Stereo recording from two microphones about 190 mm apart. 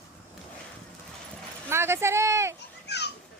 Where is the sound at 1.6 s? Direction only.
15° right (ahead or behind).